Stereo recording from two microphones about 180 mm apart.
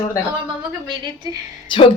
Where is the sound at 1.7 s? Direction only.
25° left (ahead or behind).